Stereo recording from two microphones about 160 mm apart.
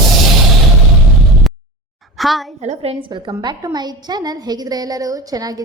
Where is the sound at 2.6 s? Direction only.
40° right (ahead or behind).